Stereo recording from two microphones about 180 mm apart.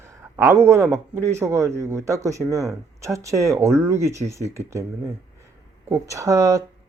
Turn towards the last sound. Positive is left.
turn(degrees=-20)  # may be behind; listen again after turning